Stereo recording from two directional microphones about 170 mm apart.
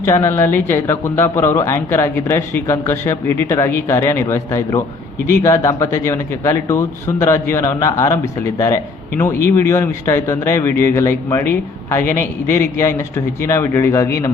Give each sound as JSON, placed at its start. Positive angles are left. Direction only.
{"t": 0.0, "sound": "a man's voice", "side_deg": 20}